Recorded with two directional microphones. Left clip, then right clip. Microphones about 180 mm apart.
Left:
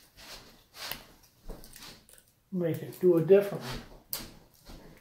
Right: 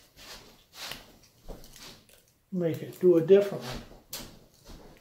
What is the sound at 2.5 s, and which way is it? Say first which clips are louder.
Speech: right 2 dB; 35° right (ahead or behind).